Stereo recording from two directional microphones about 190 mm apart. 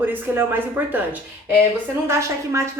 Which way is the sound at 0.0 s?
10° right (ahead or behind).